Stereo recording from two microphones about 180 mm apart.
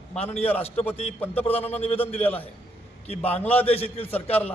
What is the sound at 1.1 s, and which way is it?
Speech, 10° left (ahead or behind).